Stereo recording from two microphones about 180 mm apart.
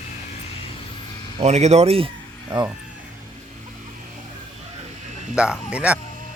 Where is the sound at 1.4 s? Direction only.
40° right (ahead or behind).